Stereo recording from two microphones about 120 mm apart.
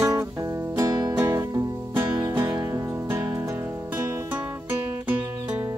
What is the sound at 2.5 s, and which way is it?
Music, 30° right (ahead or behind).